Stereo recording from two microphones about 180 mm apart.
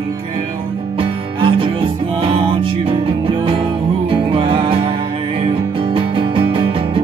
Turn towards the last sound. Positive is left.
turn(degrees=-30)  # may be behind; listen again after turning